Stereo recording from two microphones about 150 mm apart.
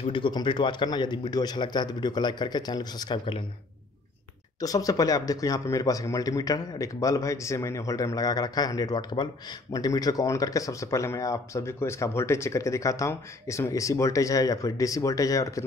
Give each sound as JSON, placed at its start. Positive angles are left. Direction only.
{"t": 0.0, "sound": "speech", "side_deg": 35}
{"t": 4.6, "sound": "speech", "side_deg": 25}